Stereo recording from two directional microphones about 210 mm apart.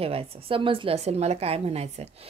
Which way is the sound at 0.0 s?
25° right (ahead or behind).